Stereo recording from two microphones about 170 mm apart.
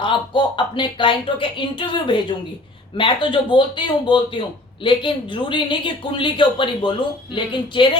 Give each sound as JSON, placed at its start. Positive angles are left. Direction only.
{"t": 0.0, "sound": "speech", "side_deg": 30}